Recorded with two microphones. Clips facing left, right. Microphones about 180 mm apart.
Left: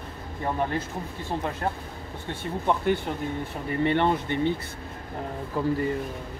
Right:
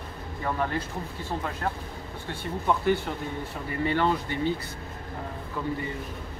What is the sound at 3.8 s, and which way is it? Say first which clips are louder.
Speech: left 2 dB; 25° left (ahead or behind).